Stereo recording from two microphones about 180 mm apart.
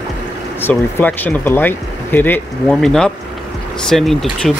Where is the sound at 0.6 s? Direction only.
10° left (ahead or behind).